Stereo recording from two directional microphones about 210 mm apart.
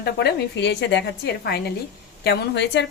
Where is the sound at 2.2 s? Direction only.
50° left (ahead or behind).